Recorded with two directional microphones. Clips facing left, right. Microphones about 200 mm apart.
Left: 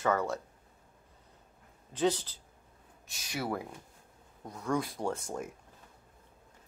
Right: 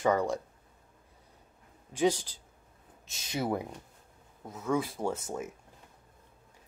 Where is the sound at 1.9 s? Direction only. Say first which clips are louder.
Right 2 dB; 15° right (ahead or behind).